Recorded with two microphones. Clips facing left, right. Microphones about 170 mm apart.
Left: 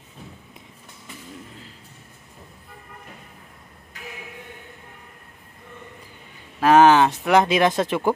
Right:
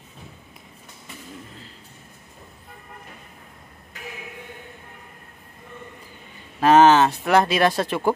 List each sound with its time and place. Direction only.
6.6 s speech: 10° left (ahead or behind)